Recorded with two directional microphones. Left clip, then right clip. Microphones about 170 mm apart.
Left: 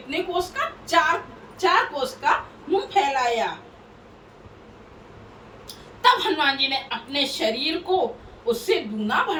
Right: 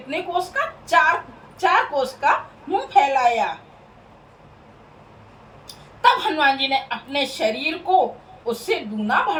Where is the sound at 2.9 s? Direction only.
10° right (ahead or behind).